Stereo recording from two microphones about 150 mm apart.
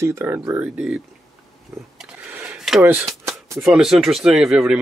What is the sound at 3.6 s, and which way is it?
Speech, centre (ahead or behind).